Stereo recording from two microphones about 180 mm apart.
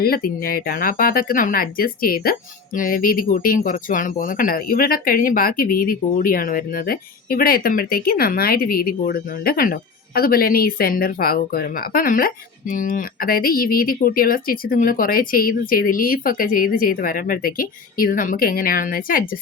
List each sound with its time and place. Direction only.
0.0 s speech: 55° left (ahead or behind)